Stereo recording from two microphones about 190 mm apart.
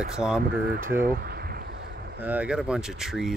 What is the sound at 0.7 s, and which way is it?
Speech, 45° right (ahead or behind).